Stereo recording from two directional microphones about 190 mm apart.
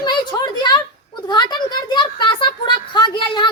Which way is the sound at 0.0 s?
20° left (ahead or behind).